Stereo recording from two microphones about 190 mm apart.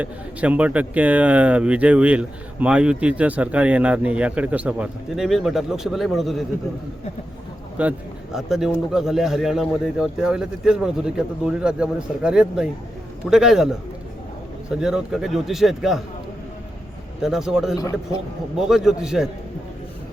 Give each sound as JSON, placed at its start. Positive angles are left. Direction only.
{"t": 0.0, "sound": "speech", "side_deg": -5}
{"t": 7.8, "sound": "a man's voice", "side_deg": -5}
{"t": 14.8, "sound": "a man's voice", "side_deg": -5}
{"t": 17.2, "sound": "a man's voice", "side_deg": 0}
{"t": 17.7, "sound": "a man's voice", "side_deg": 15}
{"t": 18.5, "sound": "a man's voice", "side_deg": 0}